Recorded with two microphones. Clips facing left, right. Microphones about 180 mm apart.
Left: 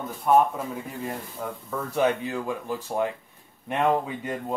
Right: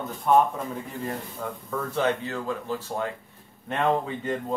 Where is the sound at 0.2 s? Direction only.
5° left (ahead or behind).